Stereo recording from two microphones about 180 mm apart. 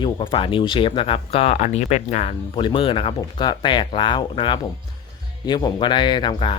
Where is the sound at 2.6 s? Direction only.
30° left (ahead or behind).